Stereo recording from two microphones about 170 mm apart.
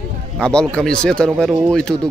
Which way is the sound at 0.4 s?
5° left (ahead or behind).